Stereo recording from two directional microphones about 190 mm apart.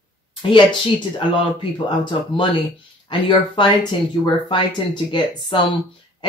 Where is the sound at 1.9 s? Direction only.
25° left (ahead or behind).